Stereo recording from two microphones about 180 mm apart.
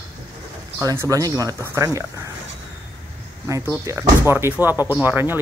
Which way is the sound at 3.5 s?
15° right (ahead or behind).